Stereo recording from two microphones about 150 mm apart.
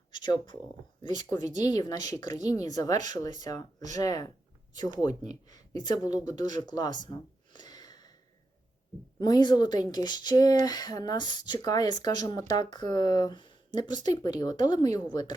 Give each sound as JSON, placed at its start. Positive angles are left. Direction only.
{"t": 0.1, "sound": "a sound", "side_deg": 30}
{"t": 1.0, "sound": "speech", "side_deg": 30}
{"t": 9.1, "sound": "speech", "side_deg": 25}